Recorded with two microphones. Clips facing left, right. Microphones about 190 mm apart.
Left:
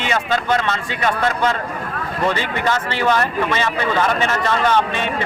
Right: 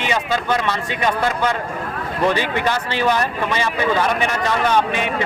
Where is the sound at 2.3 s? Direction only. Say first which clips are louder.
Right 1 dB; 15° right (ahead or behind).